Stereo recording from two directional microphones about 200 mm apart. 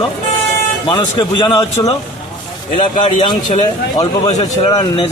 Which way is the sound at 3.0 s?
25° left (ahead or behind).